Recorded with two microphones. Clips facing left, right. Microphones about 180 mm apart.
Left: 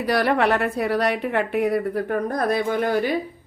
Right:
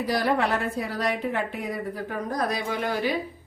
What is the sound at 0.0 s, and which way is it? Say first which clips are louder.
A man's voice: left 4 dB; 70° left (ahead or behind).